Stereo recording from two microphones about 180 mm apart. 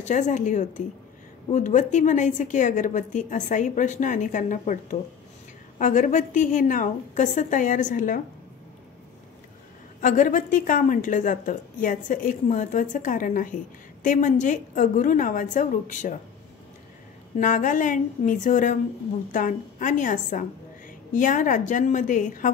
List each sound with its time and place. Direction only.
0.0 s a woman's voice: 40° left (ahead or behind)
10.0 s a woman's voice: 45° left (ahead or behind)
17.4 s a woman's voice: 45° left (ahead or behind)